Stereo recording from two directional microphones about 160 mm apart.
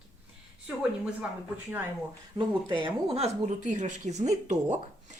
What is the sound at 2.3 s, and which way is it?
Speech, 25° right (ahead or behind).